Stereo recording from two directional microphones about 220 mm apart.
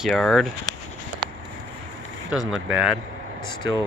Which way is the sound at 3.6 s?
55° right (ahead or behind).